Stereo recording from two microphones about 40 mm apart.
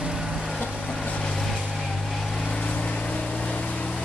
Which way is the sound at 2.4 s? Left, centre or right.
Left.